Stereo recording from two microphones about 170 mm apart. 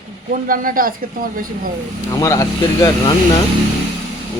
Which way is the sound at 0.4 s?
55° right (ahead or behind).